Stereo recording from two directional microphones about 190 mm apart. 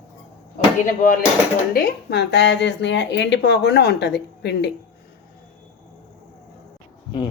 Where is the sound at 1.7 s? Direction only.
55° left (ahead or behind).